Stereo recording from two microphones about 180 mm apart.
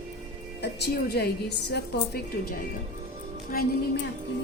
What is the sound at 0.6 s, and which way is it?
A woman's voice, 65° left (ahead or behind).